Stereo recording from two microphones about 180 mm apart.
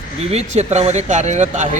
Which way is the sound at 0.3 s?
35° right (ahead or behind).